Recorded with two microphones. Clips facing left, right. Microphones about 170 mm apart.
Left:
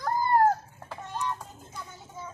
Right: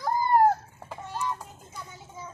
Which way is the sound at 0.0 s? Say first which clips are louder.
Right 1 dB; 10° right (ahead or behind).